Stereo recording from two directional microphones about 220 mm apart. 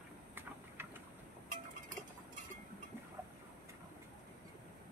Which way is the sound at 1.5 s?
35° right (ahead or behind).